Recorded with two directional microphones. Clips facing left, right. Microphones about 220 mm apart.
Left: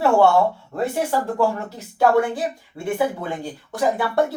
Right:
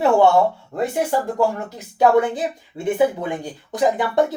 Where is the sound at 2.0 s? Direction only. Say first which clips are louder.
Right 2 dB; 20° right (ahead or behind).